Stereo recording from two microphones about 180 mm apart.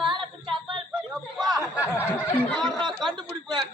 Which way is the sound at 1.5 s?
5° right (ahead or behind).